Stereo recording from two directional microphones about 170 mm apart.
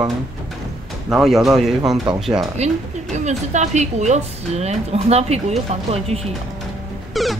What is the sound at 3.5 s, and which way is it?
Speech, 45° right (ahead or behind).